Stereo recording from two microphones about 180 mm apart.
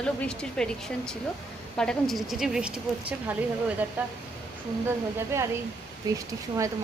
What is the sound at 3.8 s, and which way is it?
Speech, 10° right (ahead or behind).